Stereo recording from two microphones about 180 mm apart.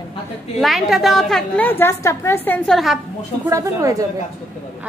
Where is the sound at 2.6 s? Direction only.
Centre (ahead or behind).